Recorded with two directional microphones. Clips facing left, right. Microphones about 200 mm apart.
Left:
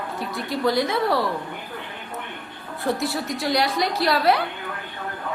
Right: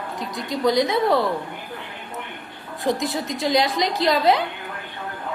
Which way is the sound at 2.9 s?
15° right (ahead or behind).